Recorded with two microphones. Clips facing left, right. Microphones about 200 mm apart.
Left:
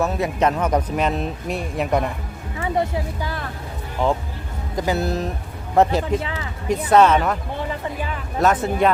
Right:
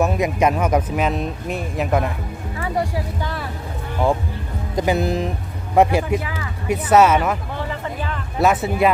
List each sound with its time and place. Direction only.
0.0 s speech: 15° right (ahead or behind)
2.6 s speech: 20° left (ahead or behind)
3.2 s speech: 5° left (ahead or behind)
4.7 s speech: 20° right (ahead or behind)
6.1 s speech: 25° left (ahead or behind)
6.7 s speech: 10° right (ahead or behind)
8.4 s speech: 10° right (ahead or behind)